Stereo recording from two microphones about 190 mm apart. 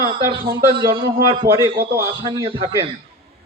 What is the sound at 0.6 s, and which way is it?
A man's voice, 20° right (ahead or behind).